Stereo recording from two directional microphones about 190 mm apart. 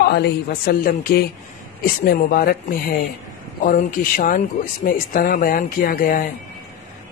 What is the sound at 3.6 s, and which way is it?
A man's voice, 45° left (ahead or behind).